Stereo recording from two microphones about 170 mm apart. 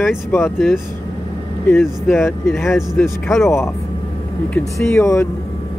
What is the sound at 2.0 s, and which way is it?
Speech, 15° left (ahead or behind).